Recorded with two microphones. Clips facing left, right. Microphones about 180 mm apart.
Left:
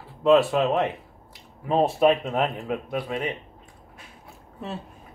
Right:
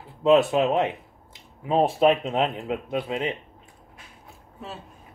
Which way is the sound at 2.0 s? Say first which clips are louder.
Even; 20° right (ahead or behind).